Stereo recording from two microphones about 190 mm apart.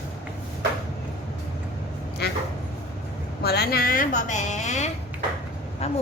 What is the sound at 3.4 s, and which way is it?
A woman's voice, 55° left (ahead or behind).